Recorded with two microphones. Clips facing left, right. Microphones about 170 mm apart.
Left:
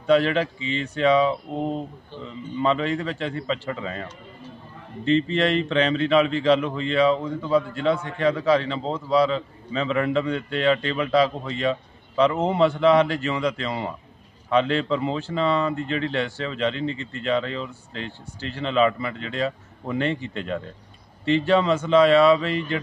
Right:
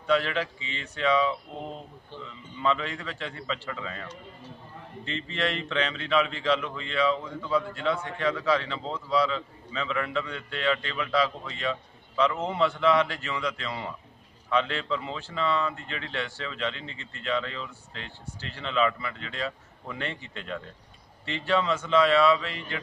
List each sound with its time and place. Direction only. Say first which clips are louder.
0.0 s a man's voice: left 7 dB; 25° left (ahead or behind)